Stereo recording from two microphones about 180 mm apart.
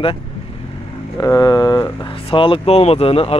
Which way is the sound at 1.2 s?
20° left (ahead or behind).